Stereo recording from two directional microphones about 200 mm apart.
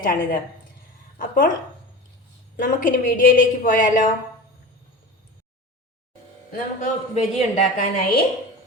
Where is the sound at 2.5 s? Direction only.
45° left (ahead or behind).